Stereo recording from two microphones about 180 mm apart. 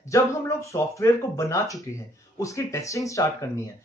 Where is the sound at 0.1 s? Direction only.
15° left (ahead or behind).